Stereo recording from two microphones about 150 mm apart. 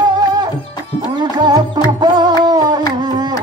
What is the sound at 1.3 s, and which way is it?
Music, 30° right (ahead or behind).